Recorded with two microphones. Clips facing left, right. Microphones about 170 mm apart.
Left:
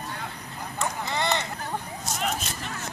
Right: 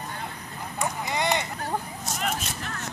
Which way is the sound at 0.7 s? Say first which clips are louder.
Right 1 dB; 15° right (ahead or behind).